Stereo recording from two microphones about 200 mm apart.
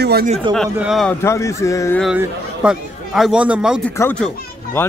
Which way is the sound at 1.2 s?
15° left (ahead or behind).